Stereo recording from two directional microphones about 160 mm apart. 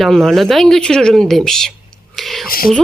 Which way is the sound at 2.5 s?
65° left (ahead or behind).